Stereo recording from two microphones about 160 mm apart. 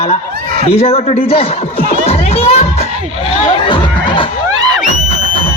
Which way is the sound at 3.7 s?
30° left (ahead or behind).